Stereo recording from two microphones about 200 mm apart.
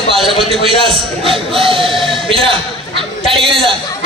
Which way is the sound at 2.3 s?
25° right (ahead or behind).